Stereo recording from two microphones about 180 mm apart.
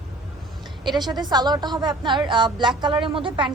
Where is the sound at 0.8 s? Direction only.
25° right (ahead or behind).